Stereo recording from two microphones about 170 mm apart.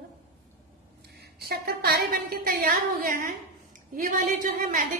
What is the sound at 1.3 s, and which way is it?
A woman's voice, 65° right (ahead or behind).